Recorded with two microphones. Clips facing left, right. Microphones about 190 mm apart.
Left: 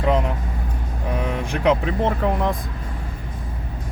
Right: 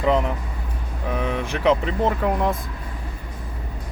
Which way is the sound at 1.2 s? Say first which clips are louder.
Even; 5° left (ahead or behind).